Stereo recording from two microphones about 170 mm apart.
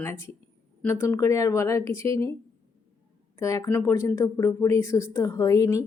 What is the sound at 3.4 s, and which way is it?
A woman's voice, 20° left (ahead or behind).